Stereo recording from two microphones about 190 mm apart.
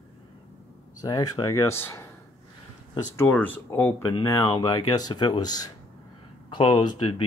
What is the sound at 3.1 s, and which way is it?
Speech, 10° left (ahead or behind).